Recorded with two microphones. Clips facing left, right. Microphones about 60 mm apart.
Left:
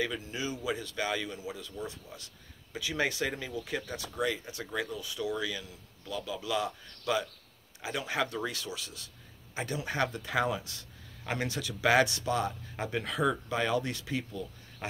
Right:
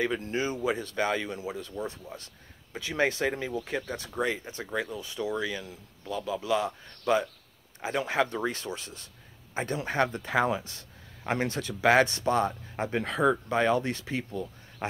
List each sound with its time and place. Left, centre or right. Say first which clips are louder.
0.2 s speech: right 7 dB; right